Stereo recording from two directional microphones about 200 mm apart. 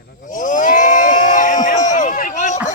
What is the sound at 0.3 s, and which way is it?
Crowd, 40° left (ahead or behind).